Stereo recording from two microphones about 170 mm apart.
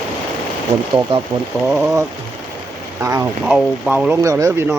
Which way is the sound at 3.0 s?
20° right (ahead or behind).